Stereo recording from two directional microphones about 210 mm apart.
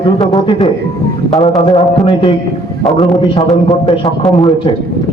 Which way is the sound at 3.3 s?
30° left (ahead or behind).